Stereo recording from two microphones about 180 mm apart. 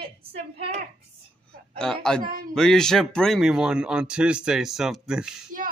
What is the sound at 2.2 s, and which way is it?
Speech, 50° right (ahead or behind).